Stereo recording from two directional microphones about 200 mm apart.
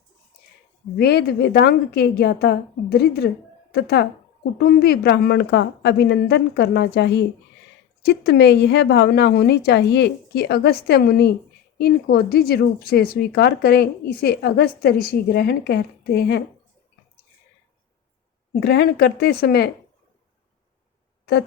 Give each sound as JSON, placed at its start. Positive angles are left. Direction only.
{"t": 0.9, "sound": "a woman's voice", "side_deg": 50}
{"t": 18.6, "sound": "speech", "side_deg": 55}